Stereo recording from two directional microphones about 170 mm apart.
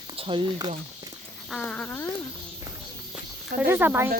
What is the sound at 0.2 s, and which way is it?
Speech, 30° right (ahead or behind).